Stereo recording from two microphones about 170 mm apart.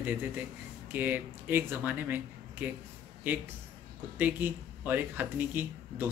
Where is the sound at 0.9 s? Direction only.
10° right (ahead or behind).